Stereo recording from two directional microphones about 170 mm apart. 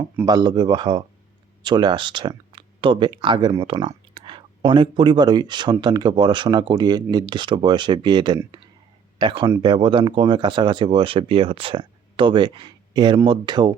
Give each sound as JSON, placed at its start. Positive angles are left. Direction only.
{"t": 0.3, "sound": "speech", "side_deg": -25}